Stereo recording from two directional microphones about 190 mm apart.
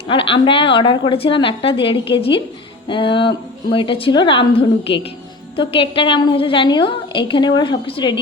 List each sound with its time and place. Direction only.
0.1 s a woman's voice: 30° left (ahead or behind)